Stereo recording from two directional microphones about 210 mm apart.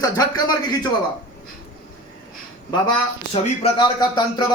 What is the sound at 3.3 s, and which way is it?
Speech, 25° left (ahead or behind).